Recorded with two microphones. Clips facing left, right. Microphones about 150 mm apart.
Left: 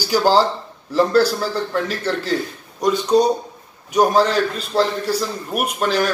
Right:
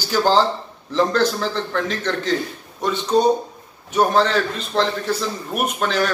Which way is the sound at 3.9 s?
10° left (ahead or behind).